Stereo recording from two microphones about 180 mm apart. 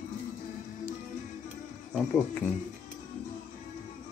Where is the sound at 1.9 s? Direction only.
10° left (ahead or behind).